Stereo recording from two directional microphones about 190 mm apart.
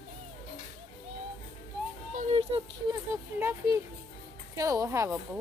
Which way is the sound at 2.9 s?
15° right (ahead or behind).